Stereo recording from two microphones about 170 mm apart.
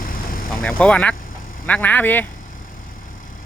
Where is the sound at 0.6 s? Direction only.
5° left (ahead or behind).